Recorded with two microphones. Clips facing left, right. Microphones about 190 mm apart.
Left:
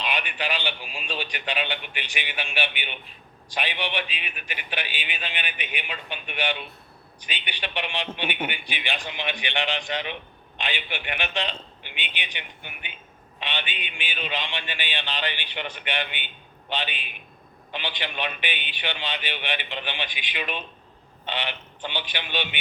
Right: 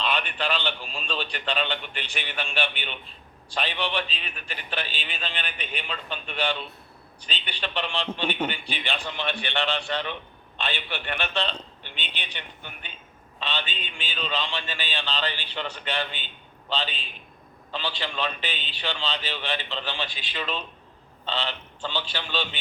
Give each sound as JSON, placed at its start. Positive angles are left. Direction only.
{"t": 0.0, "sound": "a man's voice", "side_deg": 15}